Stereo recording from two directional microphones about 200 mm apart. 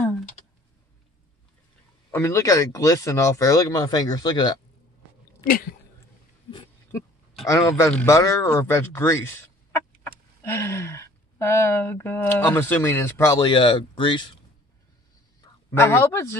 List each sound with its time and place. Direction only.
2.0 s speech: 15° left (ahead or behind)
5.4 s a sound: 45° left (ahead or behind)
7.4 s speech: 15° left (ahead or behind)
15.7 s speech: 15° left (ahead or behind)